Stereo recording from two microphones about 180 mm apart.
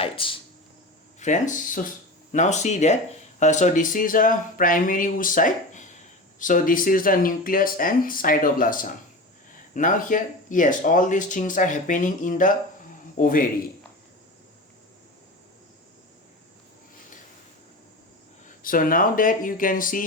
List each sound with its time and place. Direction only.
0.0 s a sound: 30° left (ahead or behind)
1.2 s speech: 45° left (ahead or behind)
18.4 s speech: 50° left (ahead or behind)